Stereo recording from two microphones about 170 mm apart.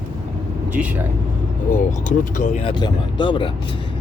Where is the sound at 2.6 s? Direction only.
25° left (ahead or behind).